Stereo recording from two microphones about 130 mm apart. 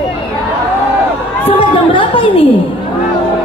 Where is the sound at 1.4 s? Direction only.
45° left (ahead or behind).